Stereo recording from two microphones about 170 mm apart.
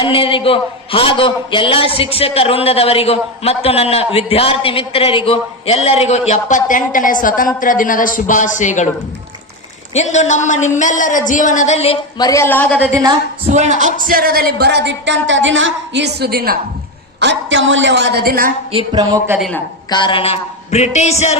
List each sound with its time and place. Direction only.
0.0 s a man's voice: 30° left (ahead or behind)
9.9 s a woman's voice: 45° left (ahead or behind)
12.1 s a woman's voice: 20° left (ahead or behind)
12.8 s a woman's voice: 20° right (ahead or behind)
13.5 s speech: 45° right (ahead or behind); by 16.6 s 65° right (ahead or behind)
17.2 s a woman's voice: 90° right; by 18.5 s 60° right (ahead or behind)
18.7 s speech: 30° right (ahead or behind)
19.4 s speech: 5° left (ahead or behind)
19.9 s a man's voice: 30° left (ahead or behind)